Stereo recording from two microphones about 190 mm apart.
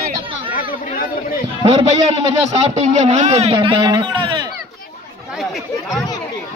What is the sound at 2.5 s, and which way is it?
Speech, 35° right (ahead or behind).